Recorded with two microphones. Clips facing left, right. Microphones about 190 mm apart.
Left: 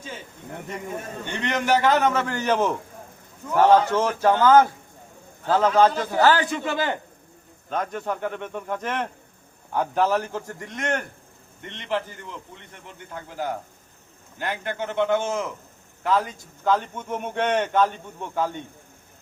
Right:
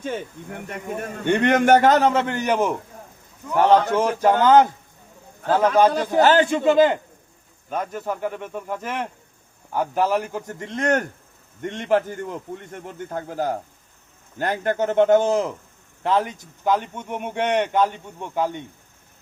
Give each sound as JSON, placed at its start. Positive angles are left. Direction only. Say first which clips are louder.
{"t": 1.2, "sound": "a man's voice", "louder": "right 10 dB", "side_deg": -55}
{"t": 2.0, "sound": "a man's voice", "louder": "right 2 dB", "side_deg": -25}
{"t": 7.7, "sound": "a man's voice", "louder": "right 1 dB", "side_deg": -5}
{"t": 16.6, "sound": "a man's voice", "louder": "right 1 dB", "side_deg": -15}